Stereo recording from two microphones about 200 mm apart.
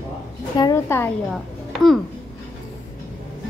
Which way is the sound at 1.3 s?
Centre (ahead or behind).